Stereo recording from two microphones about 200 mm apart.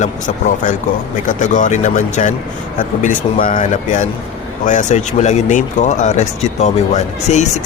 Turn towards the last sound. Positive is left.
turn(degrees=35)  # may be behind; listen again after turning